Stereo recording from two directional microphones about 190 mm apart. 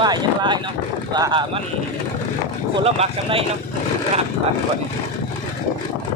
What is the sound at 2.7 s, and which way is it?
Speech, 30° right (ahead or behind).